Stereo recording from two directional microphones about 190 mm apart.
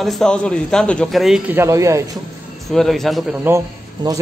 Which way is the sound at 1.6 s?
15° right (ahead or behind).